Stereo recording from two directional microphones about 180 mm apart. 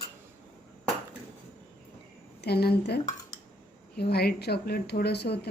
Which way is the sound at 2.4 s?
65° left (ahead or behind).